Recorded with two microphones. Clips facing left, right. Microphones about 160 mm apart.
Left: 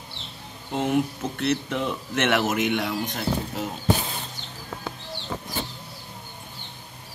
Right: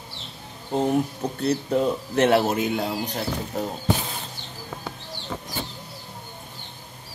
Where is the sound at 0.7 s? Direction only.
35° right (ahead or behind).